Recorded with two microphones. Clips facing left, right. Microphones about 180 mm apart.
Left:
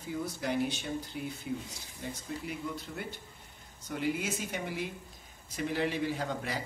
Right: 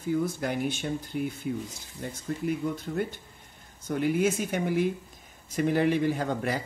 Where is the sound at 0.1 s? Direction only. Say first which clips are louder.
Right 6 dB; 50° right (ahead or behind).